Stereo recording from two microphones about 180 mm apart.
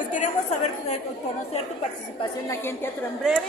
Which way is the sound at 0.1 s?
40° left (ahead or behind).